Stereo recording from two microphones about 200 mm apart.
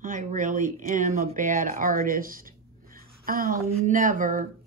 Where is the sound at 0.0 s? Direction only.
40° right (ahead or behind).